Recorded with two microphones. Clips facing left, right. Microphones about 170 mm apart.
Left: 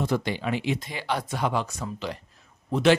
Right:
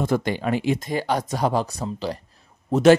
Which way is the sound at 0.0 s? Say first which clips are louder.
Right 4 dB; 50° right (ahead or behind).